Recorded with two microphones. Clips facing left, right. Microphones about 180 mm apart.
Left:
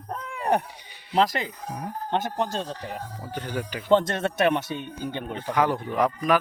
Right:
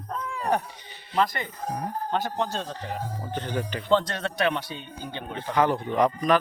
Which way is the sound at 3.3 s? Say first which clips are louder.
Right 1 dB; 10° left (ahead or behind).